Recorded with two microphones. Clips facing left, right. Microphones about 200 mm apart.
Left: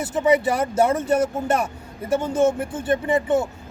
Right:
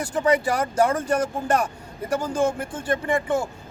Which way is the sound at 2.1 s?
25° left (ahead or behind).